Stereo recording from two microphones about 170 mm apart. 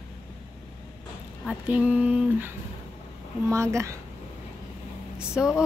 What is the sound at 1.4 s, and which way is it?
Speech, 10° right (ahead or behind).